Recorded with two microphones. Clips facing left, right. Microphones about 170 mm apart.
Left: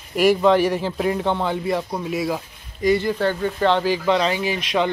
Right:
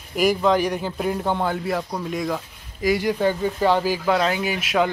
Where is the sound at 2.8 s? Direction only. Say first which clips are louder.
Left 1 dB; 10° right (ahead or behind).